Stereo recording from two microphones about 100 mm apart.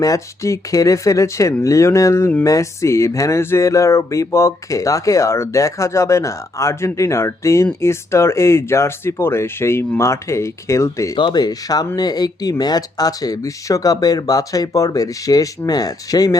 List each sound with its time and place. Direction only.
0.0 s speech: 35° left (ahead or behind)
11.2 s speech: 45° left (ahead or behind)